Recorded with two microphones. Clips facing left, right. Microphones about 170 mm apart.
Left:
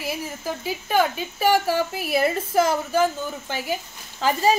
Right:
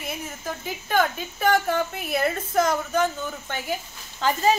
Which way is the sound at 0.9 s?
5° left (ahead or behind).